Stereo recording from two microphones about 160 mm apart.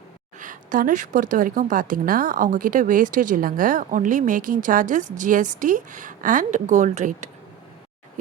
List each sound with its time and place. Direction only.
0.3 s a woman's voice: 55° right (ahead or behind)